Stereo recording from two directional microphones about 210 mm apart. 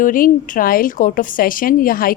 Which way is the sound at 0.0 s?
40° left (ahead or behind).